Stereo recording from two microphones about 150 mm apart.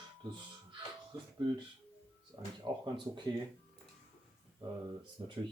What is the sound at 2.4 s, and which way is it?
Speech, 30° right (ahead or behind).